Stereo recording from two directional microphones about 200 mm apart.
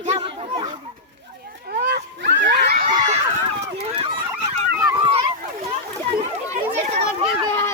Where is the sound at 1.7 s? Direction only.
50° right (ahead or behind).